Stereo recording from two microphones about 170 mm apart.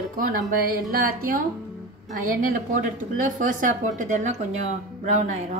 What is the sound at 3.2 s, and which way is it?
A woman's voice, 50° right (ahead or behind).